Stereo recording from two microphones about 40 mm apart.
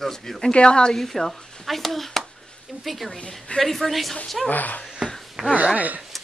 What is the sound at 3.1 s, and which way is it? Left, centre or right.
Speech, left.